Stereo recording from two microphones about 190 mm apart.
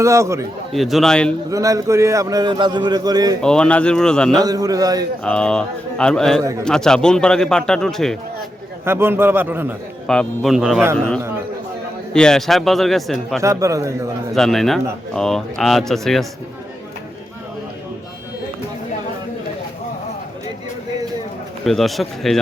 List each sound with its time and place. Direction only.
0.0 s a man's voice: 15° right (ahead or behind)
0.7 s speech: centre (ahead or behind)
1.5 s a man's voice: 15° right (ahead or behind)
3.4 s speech: 5° left (ahead or behind)
4.4 s a man's voice: 20° right (ahead or behind)
5.2 s speech: 5° left (ahead or behind)
8.8 s a man's voice: 10° right (ahead or behind)
10.1 s speech: centre (ahead or behind)
13.4 s a man's voice: 15° right (ahead or behind)
14.3 s speech: centre (ahead or behind)
21.6 s speech: centre (ahead or behind)